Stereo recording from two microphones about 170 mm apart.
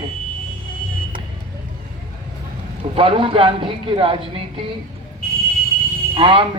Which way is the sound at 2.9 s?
30° right (ahead or behind).